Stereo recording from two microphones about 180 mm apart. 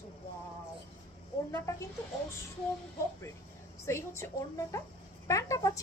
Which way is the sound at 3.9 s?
15° left (ahead or behind).